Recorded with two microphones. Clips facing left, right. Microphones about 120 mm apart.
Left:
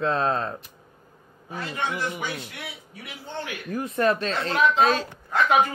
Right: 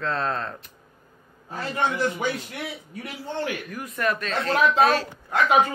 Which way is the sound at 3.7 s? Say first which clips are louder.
Left 4 dB; 30° left (ahead or behind).